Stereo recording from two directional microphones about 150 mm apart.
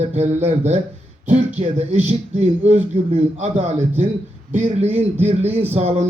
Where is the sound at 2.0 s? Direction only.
45° right (ahead or behind).